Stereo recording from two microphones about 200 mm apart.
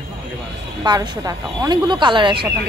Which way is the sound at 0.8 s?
20° right (ahead or behind).